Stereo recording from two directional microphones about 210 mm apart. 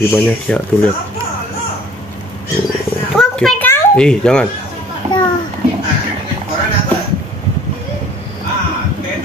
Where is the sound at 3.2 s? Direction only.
5° left (ahead or behind).